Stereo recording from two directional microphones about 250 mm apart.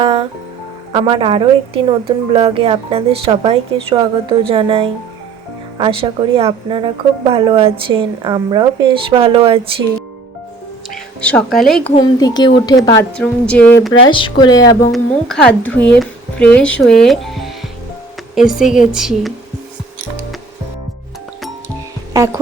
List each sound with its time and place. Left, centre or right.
0.0 s music: right
0.9 s a woman's voice: right
10.9 s speech: centre
11.9 s speech: centre
14.1 s speech: centre
14.9 s speech: centre
22.1 s music: centre